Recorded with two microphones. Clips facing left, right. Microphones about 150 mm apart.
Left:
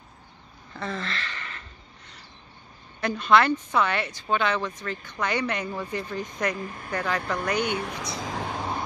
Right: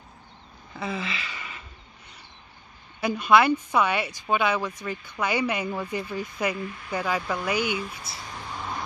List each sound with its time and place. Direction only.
0.7 s gasp: 5° right (ahead or behind)
3.0 s a woman's voice: 10° right (ahead or behind)
6.5 s speech: 40° left (ahead or behind)
6.9 s a woman's voice: 10° right (ahead or behind)
7.7 s a sound: 70° left (ahead or behind)